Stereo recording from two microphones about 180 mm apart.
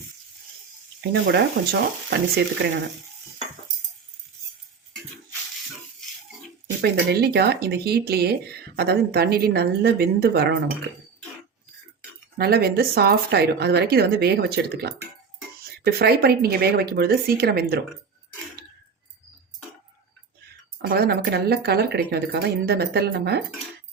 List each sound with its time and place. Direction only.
1.1 s speech: 65° right (ahead or behind)
6.8 s speech: 65° right (ahead or behind)
12.4 s speech: 60° right (ahead or behind)
20.8 s speech: 60° right (ahead or behind)